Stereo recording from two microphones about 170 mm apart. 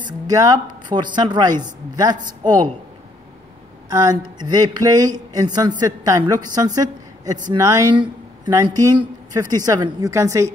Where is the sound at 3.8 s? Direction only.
20° right (ahead or behind).